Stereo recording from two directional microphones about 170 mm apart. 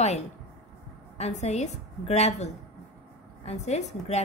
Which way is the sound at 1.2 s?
40° left (ahead or behind).